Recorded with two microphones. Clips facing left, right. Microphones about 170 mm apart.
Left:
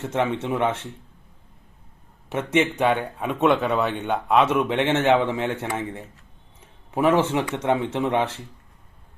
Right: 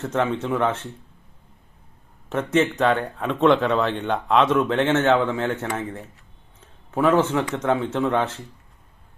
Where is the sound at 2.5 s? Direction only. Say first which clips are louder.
Right 1 dB; 10° left (ahead or behind).